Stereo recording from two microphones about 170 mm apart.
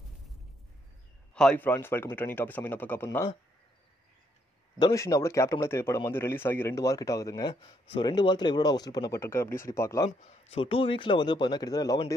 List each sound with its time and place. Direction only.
1.3 s speech: 5° left (ahead or behind)
4.7 s speech: 20° left (ahead or behind)
10.5 s speech: 35° left (ahead or behind)